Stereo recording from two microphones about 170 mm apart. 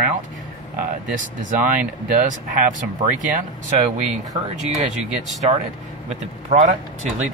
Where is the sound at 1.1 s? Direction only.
50° right (ahead or behind).